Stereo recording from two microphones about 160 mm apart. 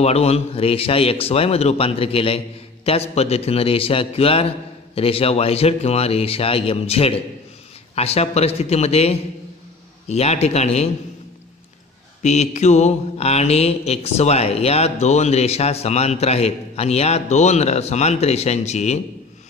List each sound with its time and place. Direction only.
0.0 s a man's voice: 40° left (ahead or behind)
12.2 s mantra: 45° left (ahead or behind)